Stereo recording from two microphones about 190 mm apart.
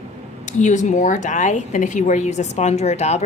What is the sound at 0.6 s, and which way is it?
A woman's voice, 40° left (ahead or behind).